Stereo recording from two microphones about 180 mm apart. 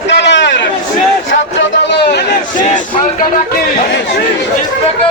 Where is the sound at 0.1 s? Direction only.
75° left (ahead or behind).